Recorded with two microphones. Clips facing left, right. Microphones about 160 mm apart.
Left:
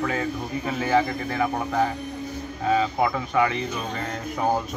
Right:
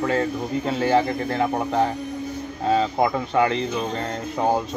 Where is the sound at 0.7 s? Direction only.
30° right (ahead or behind).